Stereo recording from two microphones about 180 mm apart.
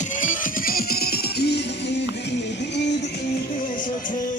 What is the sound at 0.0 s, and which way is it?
Music, 45° left (ahead or behind).